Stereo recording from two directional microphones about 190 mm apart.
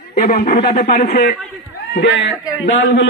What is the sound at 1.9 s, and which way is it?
Speech, 70° left (ahead or behind).